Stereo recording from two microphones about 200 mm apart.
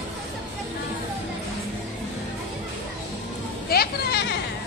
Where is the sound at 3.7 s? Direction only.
50° left (ahead or behind).